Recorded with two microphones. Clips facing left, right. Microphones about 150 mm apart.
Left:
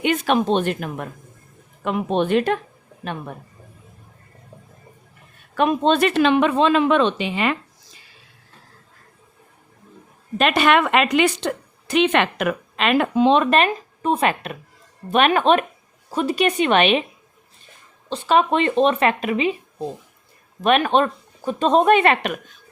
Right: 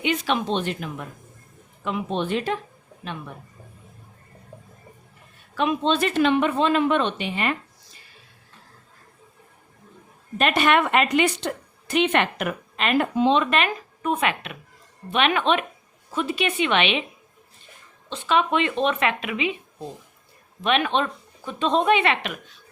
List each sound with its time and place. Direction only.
0.0 s a woman's voice: 50° left (ahead or behind)
5.5 s a woman's voice: 50° left (ahead or behind); by 7.5 s 90° left
10.3 s a woman's voice: 90° left
13.3 s speech: 45° left (ahead or behind)
13.7 s a woman's voice: 30° left (ahead or behind)
18.1 s speech: 40° left (ahead or behind)
20.6 s speech: 45° left (ahead or behind)